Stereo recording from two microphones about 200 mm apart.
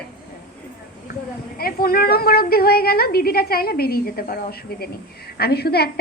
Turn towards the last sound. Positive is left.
turn(degrees=55)  # may be behind; listen again after turning